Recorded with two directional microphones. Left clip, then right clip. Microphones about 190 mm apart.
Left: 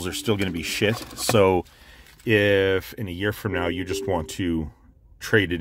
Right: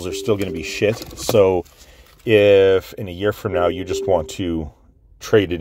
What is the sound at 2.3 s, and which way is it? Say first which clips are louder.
Speech: right 7 dB; 10° right (ahead or behind).